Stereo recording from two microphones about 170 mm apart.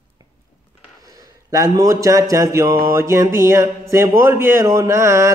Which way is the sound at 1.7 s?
20° right (ahead or behind).